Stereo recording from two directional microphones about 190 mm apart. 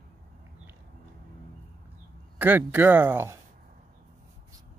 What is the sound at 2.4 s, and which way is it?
Speech, 10° right (ahead or behind).